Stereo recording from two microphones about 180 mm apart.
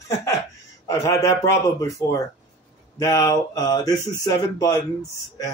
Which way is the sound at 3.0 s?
15° left (ahead or behind).